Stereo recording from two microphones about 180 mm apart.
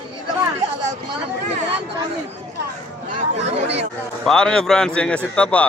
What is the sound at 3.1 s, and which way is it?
Speech, 35° right (ahead or behind).